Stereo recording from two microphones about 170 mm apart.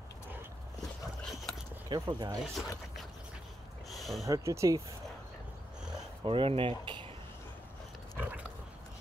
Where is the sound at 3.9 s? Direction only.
Centre (ahead or behind).